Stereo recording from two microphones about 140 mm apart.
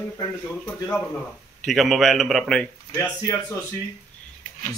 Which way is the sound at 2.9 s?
20° left (ahead or behind).